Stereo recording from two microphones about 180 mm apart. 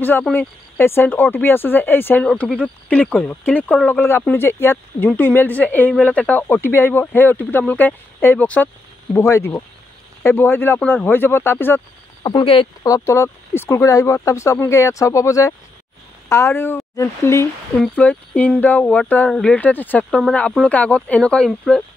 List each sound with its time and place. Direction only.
0.0 s speech: 10° left (ahead or behind)
12.2 s speech: 25° left (ahead or behind)
12.8 s speech: 15° left (ahead or behind)